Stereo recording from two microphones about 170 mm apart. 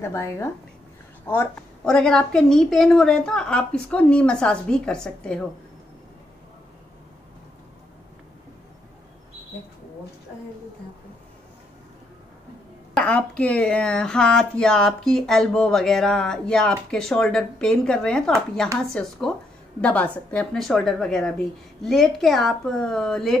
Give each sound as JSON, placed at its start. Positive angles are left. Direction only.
{"t": 0.0, "sound": "a woman's voice", "side_deg": 15}
{"t": 12.9, "sound": "speech", "side_deg": 5}